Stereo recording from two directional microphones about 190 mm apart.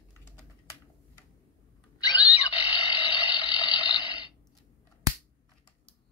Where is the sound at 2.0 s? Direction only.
20° left (ahead or behind).